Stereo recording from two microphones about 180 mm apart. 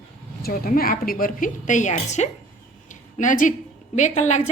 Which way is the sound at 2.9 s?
45° left (ahead or behind).